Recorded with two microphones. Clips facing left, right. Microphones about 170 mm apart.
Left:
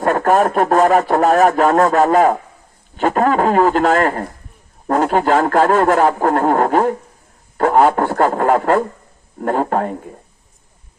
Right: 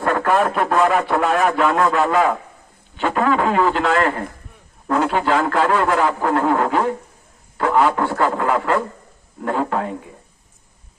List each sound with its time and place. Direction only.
0.0 s speech: 40° left (ahead or behind)